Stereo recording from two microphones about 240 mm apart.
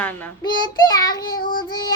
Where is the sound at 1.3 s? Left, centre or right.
Left.